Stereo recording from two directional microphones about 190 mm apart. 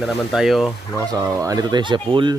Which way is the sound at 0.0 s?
5° right (ahead or behind).